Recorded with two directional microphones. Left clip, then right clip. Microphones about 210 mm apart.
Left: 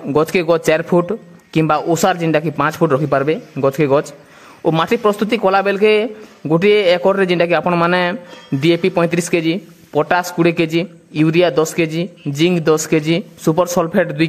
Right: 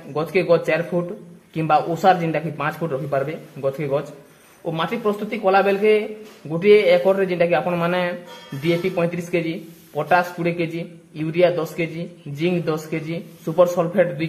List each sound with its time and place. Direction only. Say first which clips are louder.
0.1 s speech: left 4 dB; 50° left (ahead or behind)